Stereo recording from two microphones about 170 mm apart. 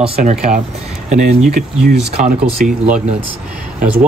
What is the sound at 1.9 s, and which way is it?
Speech, 60° right (ahead or behind).